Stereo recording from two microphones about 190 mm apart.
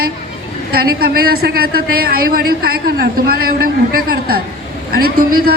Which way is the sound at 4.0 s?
50° right (ahead or behind).